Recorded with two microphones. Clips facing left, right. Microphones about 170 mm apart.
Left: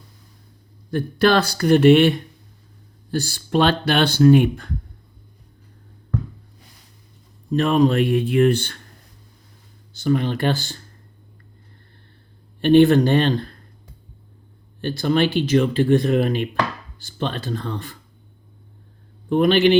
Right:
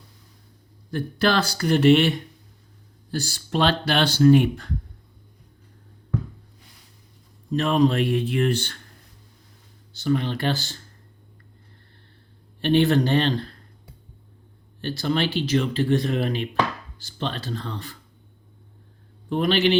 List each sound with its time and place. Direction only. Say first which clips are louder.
0.9 s speech: left 5 dB; 55° left (ahead or behind)
7.5 s speech: left 3 dB; 55° left (ahead or behind)
9.9 s speech: left 3 dB; 45° left (ahead or behind)
12.6 s speech: left 6 dB; 50° left (ahead or behind)
14.8 s speech: left 5 dB; 50° left (ahead or behind)
19.3 s speech: left 5 dB; 50° left (ahead or behind)